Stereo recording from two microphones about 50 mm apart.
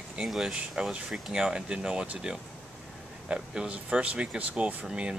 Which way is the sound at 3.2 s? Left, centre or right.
Centre.